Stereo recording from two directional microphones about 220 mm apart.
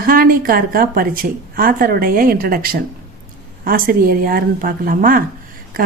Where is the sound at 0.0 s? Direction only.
40° right (ahead or behind).